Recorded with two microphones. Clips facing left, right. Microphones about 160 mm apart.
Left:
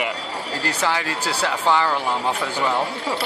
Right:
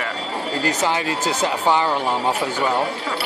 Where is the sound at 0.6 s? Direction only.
20° right (ahead or behind).